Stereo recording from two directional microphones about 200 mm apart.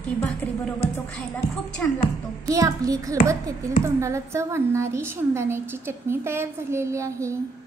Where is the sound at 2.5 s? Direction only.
15° right (ahead or behind).